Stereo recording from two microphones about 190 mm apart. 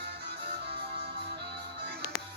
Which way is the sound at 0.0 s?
60° right (ahead or behind).